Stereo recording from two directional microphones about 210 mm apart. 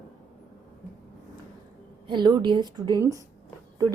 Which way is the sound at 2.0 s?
20° right (ahead or behind).